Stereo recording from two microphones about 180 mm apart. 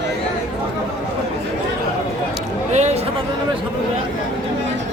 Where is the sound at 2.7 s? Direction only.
40° right (ahead or behind).